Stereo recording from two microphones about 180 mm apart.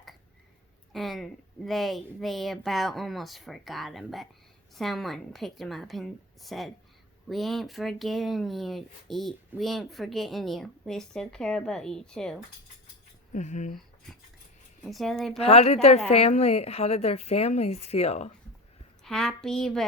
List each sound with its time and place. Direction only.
0.9 s speech: centre (ahead or behind)
13.3 s speech: 40° left (ahead or behind)
14.8 s speech: centre (ahead or behind)
15.4 s speech: 35° left (ahead or behind)
19.0 s speech: centre (ahead or behind)